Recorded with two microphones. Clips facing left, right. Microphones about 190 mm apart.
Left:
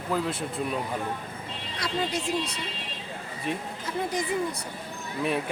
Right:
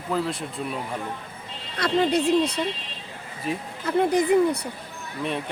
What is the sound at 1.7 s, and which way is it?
Speech, 60° right (ahead or behind).